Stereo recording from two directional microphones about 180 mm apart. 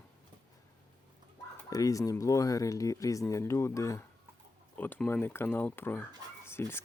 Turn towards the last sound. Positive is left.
turn(degrees=15)  # may be behind; listen again after turning